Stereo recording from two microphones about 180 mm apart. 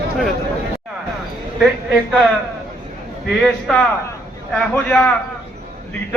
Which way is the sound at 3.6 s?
5° left (ahead or behind).